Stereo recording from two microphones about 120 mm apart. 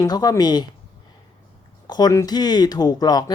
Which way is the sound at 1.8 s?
35° left (ahead or behind).